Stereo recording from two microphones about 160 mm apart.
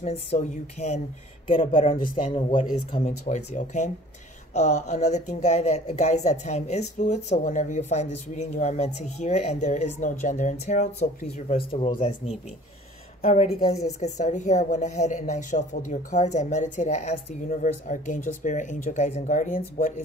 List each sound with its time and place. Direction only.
0.0 s speech: 40° left (ahead or behind)
1.5 s a man's voice: 35° left (ahead or behind)
13.2 s speech: 45° left (ahead or behind)